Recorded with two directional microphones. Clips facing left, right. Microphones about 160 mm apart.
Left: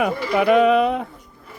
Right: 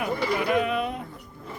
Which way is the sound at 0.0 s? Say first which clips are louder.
Left 7 dB; 90° left.